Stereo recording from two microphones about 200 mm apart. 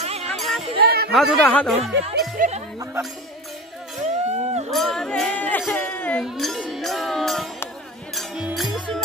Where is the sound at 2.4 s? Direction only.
35° right (ahead or behind).